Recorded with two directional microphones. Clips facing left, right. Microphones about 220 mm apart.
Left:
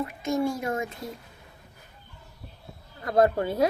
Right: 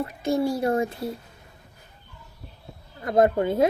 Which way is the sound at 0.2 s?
35° right (ahead or behind).